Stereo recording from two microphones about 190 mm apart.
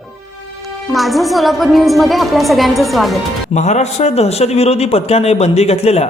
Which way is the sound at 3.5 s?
35° left (ahead or behind).